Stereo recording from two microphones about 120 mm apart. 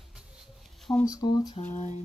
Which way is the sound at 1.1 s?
30° left (ahead or behind).